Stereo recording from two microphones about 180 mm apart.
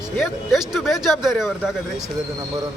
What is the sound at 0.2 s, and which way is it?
A man's voice, centre (ahead or behind).